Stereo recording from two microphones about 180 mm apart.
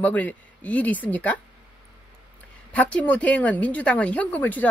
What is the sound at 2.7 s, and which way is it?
A woman's voice, 10° left (ahead or behind).